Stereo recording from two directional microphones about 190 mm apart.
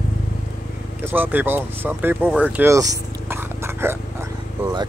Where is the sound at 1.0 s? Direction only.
10° right (ahead or behind).